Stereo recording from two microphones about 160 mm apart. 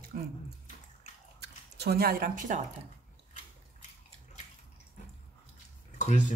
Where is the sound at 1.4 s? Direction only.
90° right; by 2.6 s 55° right (ahead or behind).